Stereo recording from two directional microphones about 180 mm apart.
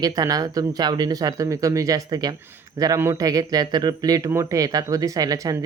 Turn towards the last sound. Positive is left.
turn(degrees=-20)  # may be behind; listen again after turning